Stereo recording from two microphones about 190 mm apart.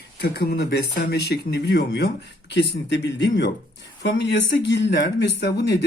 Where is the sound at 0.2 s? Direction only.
60° left (ahead or behind).